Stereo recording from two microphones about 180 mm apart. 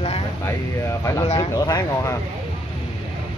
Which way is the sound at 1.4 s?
20° left (ahead or behind).